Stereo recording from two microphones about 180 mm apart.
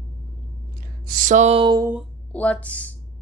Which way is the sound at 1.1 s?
45° right (ahead or behind).